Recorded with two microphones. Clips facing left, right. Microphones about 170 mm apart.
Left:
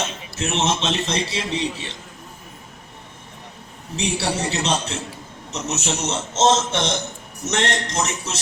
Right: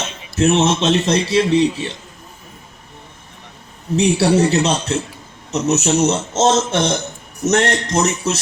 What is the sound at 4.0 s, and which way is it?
A man's voice, 40° right (ahead or behind).